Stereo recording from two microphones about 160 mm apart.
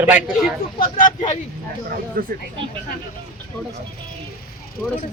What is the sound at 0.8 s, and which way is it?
Speech, 55° left (ahead or behind).